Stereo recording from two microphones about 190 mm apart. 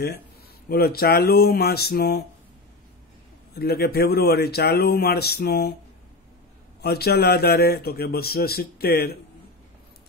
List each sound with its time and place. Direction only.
0.7 s speech: 55° left (ahead or behind)
3.5 s speech: 55° left (ahead or behind)
6.8 s speech: 55° left (ahead or behind)